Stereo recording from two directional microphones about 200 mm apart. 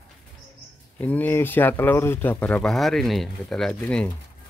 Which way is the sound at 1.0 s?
10° left (ahead or behind).